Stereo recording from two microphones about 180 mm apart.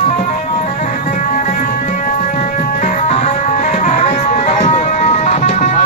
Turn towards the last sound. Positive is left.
turn(degrees=40)  # may be behind; listen again after turning